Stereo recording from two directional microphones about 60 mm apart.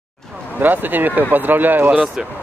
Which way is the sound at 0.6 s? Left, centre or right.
Right.